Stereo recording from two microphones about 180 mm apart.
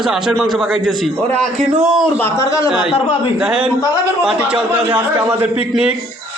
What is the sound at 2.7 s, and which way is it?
A man's voice, 5° right (ahead or behind).